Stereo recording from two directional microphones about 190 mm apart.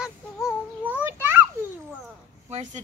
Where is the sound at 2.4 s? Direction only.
35° right (ahead or behind).